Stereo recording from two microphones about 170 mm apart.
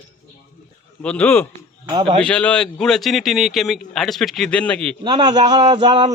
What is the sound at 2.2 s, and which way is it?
A man's voice, 5° left (ahead or behind).